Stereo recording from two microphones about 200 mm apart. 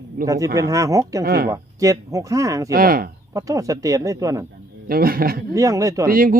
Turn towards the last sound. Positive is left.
turn(degrees=-45)  # may be behind; listen again after turning